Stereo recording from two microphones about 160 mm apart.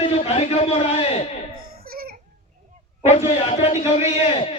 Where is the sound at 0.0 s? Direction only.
40° left (ahead or behind).